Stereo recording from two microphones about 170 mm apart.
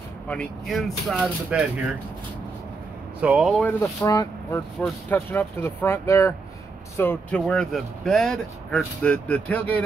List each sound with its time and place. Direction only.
0.3 s speech: 5° left (ahead or behind)
3.2 s speech: 5° right (ahead or behind)
3.8 s speech: 20° left (ahead or behind)